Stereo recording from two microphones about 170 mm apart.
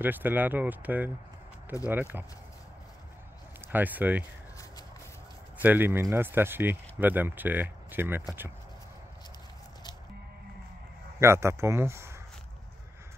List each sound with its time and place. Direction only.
0.0 s speech: 10° right (ahead or behind)
3.6 s speech: 10° right (ahead or behind)
5.6 s speech: 10° right (ahead or behind)
11.1 s speech: 15° right (ahead or behind)